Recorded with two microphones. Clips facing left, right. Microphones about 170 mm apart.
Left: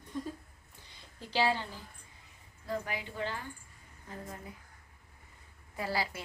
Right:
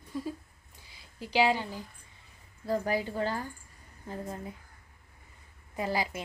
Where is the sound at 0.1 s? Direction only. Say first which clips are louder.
Right 3 dB; 5° right (ahead or behind).